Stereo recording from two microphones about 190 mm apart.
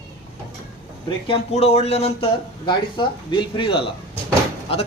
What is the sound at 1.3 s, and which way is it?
Speech, 35° left (ahead or behind).